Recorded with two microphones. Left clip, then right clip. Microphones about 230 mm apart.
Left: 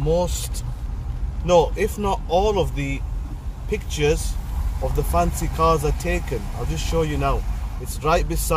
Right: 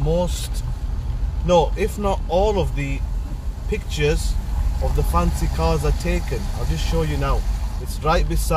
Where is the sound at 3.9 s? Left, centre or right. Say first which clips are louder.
Left 1 dB; left.